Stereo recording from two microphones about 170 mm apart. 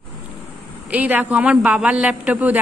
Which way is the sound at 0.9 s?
10° right (ahead or behind).